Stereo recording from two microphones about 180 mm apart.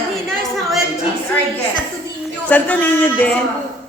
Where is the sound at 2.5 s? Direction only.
10° left (ahead or behind).